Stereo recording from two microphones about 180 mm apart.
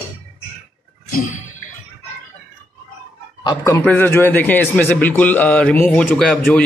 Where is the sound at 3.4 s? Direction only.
15° left (ahead or behind).